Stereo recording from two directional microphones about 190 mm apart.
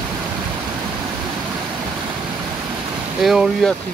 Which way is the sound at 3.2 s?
Centre (ahead or behind).